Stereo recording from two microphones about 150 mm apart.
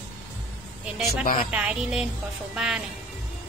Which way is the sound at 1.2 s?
65° left (ahead or behind).